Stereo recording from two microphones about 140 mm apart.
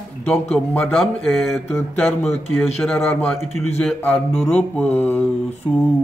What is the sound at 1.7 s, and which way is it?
A man's voice, 15° left (ahead or behind).